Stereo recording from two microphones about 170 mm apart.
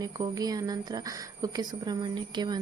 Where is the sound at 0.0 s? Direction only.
20° right (ahead or behind).